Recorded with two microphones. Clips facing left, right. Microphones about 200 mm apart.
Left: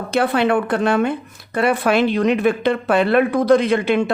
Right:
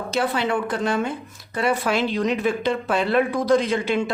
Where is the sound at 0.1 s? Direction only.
60° left (ahead or behind).